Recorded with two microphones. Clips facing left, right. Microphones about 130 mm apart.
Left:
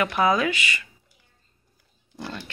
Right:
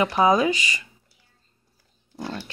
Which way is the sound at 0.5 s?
35° right (ahead or behind).